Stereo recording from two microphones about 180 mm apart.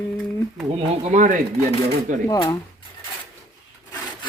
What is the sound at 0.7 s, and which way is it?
Speech, 40° right (ahead or behind).